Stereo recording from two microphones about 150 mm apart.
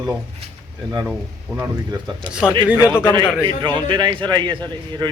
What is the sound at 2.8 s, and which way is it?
Speech, 15° left (ahead or behind).